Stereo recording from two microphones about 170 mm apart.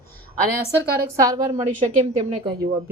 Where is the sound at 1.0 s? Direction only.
20° right (ahead or behind).